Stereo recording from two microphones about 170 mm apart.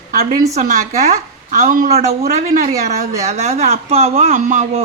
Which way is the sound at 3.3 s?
40° right (ahead or behind).